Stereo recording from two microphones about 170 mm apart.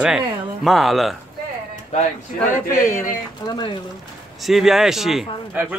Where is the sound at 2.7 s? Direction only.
50° left (ahead or behind).